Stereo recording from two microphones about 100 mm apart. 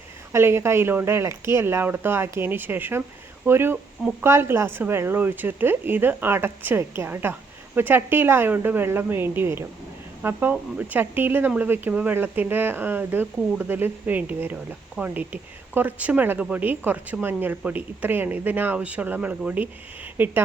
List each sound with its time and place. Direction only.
0.3 s speech: 25° right (ahead or behind)